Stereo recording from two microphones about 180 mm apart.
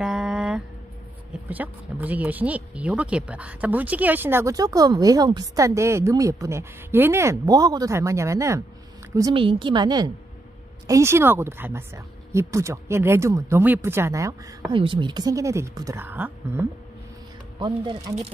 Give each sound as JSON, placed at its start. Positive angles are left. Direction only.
{"t": 0.0, "sound": "a sound", "side_deg": -5}
{"t": 1.5, "sound": "speech", "side_deg": -10}
{"t": 9.3, "sound": "a woman's voice", "side_deg": -30}
{"t": 17.6, "sound": "a woman's voice", "side_deg": -25}